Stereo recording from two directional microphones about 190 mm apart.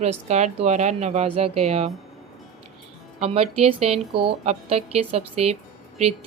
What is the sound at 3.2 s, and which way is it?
Speech, 30° right (ahead or behind).